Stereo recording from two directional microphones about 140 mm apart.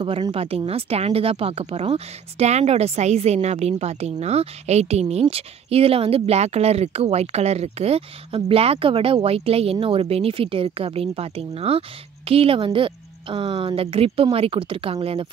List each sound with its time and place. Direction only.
0.0 s a woman's voice: 40° right (ahead or behind)